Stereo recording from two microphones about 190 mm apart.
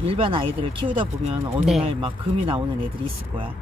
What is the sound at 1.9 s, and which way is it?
Speech, 25° right (ahead or behind).